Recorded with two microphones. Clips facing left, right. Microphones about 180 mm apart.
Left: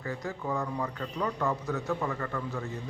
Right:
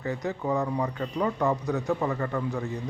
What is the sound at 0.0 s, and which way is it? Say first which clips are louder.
Speech: right 5 dB; 20° right (ahead or behind).